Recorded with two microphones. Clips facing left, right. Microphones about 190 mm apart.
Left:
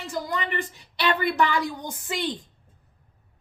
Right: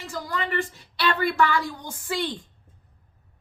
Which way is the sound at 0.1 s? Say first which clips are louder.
Even; 20° left (ahead or behind).